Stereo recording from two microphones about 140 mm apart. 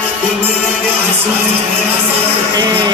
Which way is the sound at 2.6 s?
30° right (ahead or behind).